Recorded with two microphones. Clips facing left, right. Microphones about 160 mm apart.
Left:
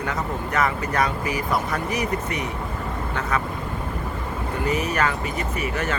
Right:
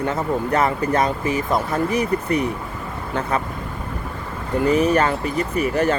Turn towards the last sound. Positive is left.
turn(degrees=-35)  # may be behind; listen again after turning